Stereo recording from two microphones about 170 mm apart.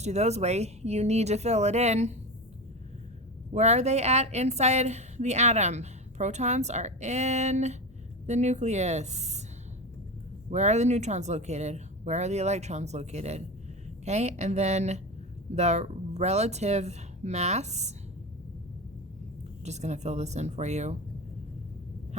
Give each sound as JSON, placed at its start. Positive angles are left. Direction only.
{"t": 0.0, "sound": "a woman's voice", "side_deg": -40}
{"t": 3.5, "sound": "a woman's voice", "side_deg": -40}
{"t": 10.5, "sound": "a woman's voice", "side_deg": -40}
{"t": 19.6, "sound": "a woman's voice", "side_deg": -40}